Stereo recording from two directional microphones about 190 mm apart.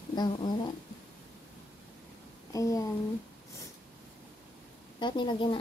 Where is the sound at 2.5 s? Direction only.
15° left (ahead or behind).